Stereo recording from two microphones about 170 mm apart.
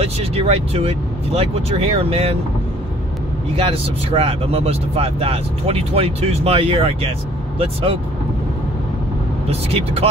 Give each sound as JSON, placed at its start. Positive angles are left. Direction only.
{"t": 0.0, "sound": "speech", "side_deg": -35}
{"t": 3.5, "sound": "speech", "side_deg": -35}
{"t": 9.5, "sound": "speech", "side_deg": -35}